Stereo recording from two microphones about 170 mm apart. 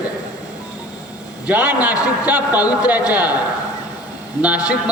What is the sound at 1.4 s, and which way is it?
A man's voice, 10° right (ahead or behind).